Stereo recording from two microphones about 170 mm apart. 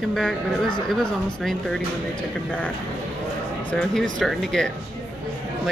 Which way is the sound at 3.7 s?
5° left (ahead or behind).